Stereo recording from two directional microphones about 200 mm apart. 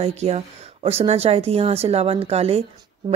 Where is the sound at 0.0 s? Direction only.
30° right (ahead or behind).